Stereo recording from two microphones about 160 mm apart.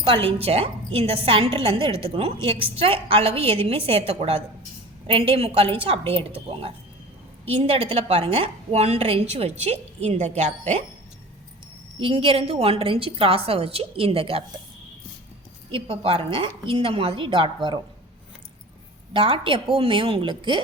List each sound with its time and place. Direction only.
0.0 s a woman's voice: 35° right (ahead or behind)
11.9 s a woman's voice: 35° right (ahead or behind)
15.7 s a woman's voice: 35° right (ahead or behind)
19.1 s a woman's voice: 35° right (ahead or behind)